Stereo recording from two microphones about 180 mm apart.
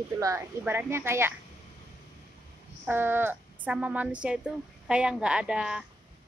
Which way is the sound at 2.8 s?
10° right (ahead or behind).